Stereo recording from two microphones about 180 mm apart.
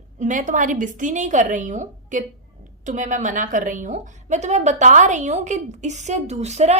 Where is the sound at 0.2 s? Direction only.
45° right (ahead or behind).